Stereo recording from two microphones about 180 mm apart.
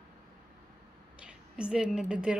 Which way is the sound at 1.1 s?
5° right (ahead or behind).